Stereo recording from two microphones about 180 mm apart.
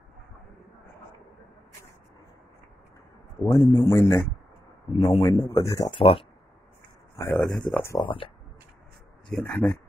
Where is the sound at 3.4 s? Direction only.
30° left (ahead or behind).